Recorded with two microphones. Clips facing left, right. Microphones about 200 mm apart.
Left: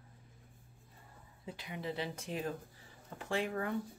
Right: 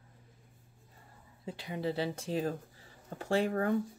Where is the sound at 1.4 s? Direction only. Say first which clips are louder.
Right 6 dB; 30° right (ahead or behind).